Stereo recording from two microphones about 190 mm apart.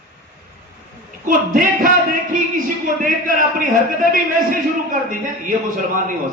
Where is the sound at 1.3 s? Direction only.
45° right (ahead or behind).